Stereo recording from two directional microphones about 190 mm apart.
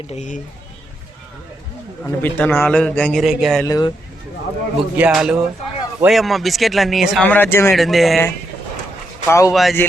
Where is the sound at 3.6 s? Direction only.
20° left (ahead or behind).